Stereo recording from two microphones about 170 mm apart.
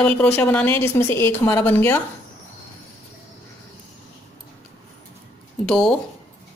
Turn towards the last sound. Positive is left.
turn(degrees=5)  # may be behind; listen again after turning